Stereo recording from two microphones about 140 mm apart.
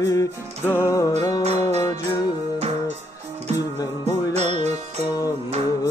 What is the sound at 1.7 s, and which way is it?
Music, 50° right (ahead or behind).